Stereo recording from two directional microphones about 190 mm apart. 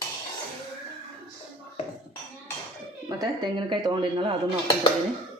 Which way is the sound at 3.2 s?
25° right (ahead or behind).